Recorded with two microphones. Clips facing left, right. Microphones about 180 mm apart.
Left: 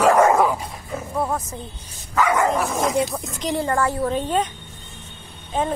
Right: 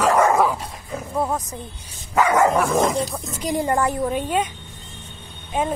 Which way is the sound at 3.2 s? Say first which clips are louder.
Right 1 dB; 10° right (ahead or behind).